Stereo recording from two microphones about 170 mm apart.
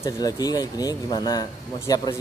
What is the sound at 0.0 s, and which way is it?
Speech, 20° left (ahead or behind).